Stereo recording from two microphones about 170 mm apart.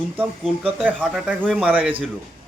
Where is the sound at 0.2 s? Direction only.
5° right (ahead or behind).